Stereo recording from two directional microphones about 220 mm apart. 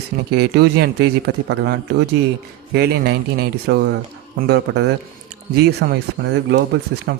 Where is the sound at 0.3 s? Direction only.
50° right (ahead or behind).